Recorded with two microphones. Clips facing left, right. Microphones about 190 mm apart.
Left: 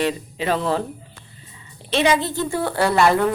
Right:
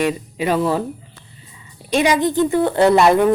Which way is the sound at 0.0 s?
15° right (ahead or behind).